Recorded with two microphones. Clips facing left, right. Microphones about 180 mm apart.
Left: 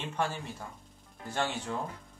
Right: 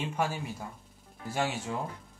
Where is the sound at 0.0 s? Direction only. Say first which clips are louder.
Right 2 dB; 10° right (ahead or behind).